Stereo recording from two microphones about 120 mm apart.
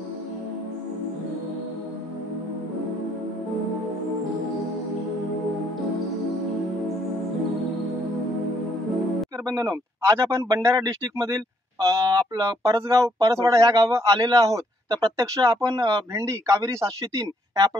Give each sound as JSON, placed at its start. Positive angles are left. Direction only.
{"t": 9.5, "sound": "speech", "side_deg": -25}